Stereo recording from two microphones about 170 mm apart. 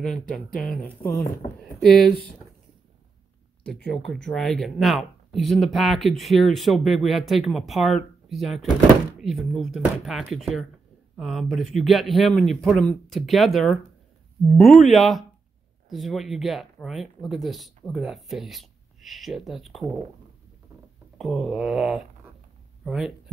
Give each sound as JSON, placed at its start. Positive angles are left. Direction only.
{"t": 0.0, "sound": "speech", "side_deg": 5}
{"t": 1.6, "sound": "speech", "side_deg": 5}
{"t": 3.6, "sound": "speech", "side_deg": 5}
{"t": 21.2, "sound": "speech", "side_deg": 0}